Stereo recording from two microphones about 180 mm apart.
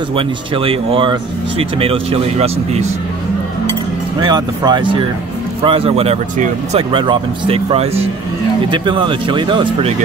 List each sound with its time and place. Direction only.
0.1 s speech: 30° right (ahead or behind)
4.2 s speech: 25° right (ahead or behind); by 6.8 s 40° right (ahead or behind)
6.9 s speech: 25° right (ahead or behind)